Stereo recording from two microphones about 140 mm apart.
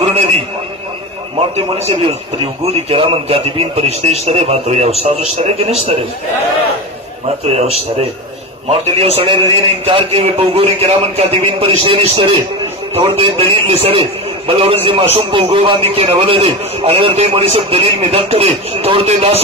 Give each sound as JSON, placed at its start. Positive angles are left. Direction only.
{"t": 1.8, "sound": "a man's voice", "side_deg": -45}
{"t": 7.2, "sound": "a man's voice", "side_deg": -50}